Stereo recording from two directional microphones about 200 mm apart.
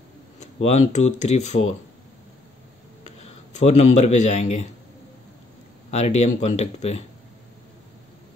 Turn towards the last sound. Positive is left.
turn(degrees=30)  # may be behind; listen again after turning